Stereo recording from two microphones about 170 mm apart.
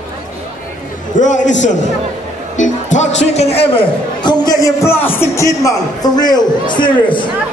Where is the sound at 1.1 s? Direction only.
45° left (ahead or behind).